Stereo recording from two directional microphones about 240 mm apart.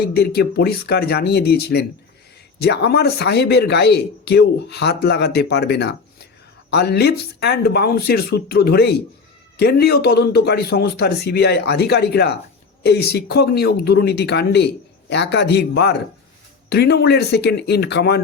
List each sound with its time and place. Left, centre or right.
0.0 s speech: left